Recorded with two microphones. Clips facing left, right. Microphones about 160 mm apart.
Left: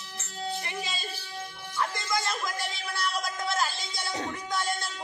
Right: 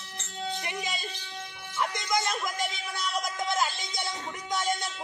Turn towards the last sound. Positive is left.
turn(degrees=-20)  # may be behind; listen again after turning